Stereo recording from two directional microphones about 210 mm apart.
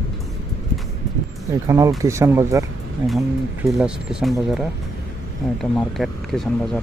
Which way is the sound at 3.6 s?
5° right (ahead or behind).